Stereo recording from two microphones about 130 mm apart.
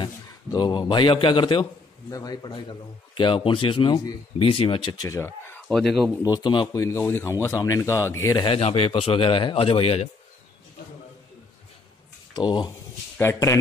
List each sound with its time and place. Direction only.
0.0 s a man's voice: 35° left (ahead or behind)
5.0 s speech: 25° left (ahead or behind)
5.7 s speech: 5° left (ahead or behind)
6.2 s speech: 35° left (ahead or behind)
6.7 s speech: 20° left (ahead or behind)
8.5 s a man's voice: 50° left (ahead or behind)
12.4 s speech: 35° left (ahead or behind)
13.2 s speech: 20° left (ahead or behind)